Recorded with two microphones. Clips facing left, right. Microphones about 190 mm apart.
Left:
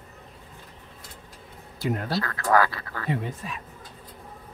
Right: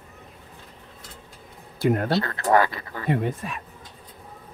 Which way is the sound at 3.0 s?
60° right (ahead or behind).